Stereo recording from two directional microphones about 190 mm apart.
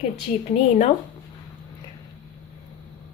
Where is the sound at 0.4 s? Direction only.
35° left (ahead or behind).